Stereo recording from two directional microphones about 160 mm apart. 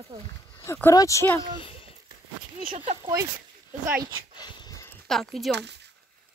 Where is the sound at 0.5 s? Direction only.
15° left (ahead or behind).